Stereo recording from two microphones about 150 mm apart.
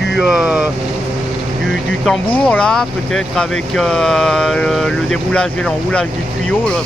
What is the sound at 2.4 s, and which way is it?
Speech, 5° left (ahead or behind).